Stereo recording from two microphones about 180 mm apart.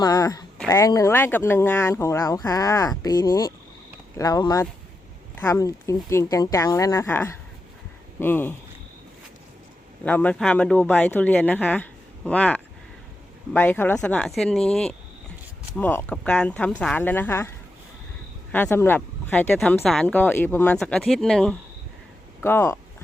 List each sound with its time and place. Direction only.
0.0 s speech: 20° left (ahead or behind)
10.0 s speech: 10° left (ahead or behind)
18.5 s speech: 10° left (ahead or behind)
22.4 s speech: 15° left (ahead or behind)